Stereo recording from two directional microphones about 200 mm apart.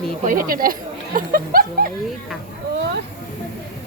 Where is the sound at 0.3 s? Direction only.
45° right (ahead or behind).